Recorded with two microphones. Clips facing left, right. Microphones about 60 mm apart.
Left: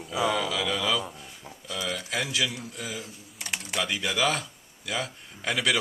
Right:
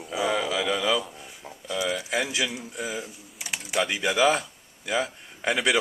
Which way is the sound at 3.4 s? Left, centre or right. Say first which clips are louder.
Right 4 dB; centre.